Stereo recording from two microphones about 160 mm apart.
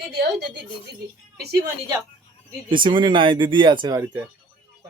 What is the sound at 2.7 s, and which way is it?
Speech, 30° right (ahead or behind).